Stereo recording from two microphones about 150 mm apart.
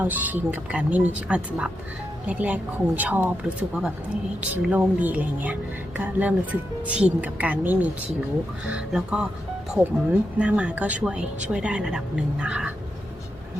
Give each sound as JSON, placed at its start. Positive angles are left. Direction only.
{"t": 0.0, "sound": "speech", "side_deg": -10}